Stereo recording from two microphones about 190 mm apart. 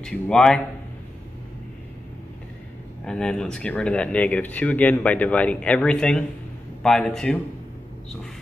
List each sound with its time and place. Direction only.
0.0 s a man's voice: 5° left (ahead or behind)
3.1 s a man's voice: 5° left (ahead or behind)